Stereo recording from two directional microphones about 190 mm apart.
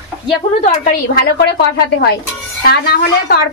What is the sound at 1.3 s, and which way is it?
A woman's voice, 60° left (ahead or behind).